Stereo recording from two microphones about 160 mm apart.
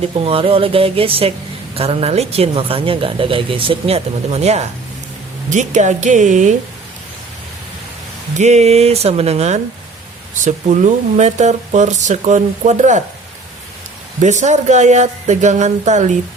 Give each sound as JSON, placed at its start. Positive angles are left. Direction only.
{"t": 0.2, "sound": "a woman's voice", "side_deg": -35}
{"t": 8.4, "sound": "a woman's voice", "side_deg": -45}
{"t": 14.2, "sound": "speech", "side_deg": -50}